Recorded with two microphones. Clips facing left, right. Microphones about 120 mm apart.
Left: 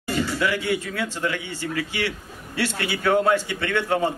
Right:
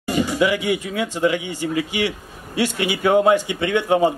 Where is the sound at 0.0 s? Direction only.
15° right (ahead or behind).